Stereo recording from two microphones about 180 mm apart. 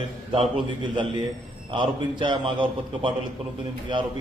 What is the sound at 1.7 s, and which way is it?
A man's voice, 25° right (ahead or behind).